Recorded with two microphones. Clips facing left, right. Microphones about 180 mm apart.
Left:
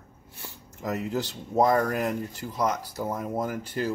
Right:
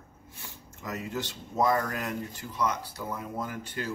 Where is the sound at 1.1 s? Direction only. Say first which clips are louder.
Left 7 dB; 40° left (ahead or behind).